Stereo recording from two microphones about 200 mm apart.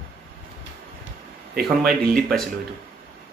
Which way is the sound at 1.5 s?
50° right (ahead or behind).